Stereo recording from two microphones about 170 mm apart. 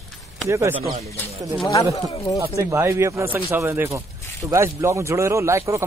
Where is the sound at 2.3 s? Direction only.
15° right (ahead or behind).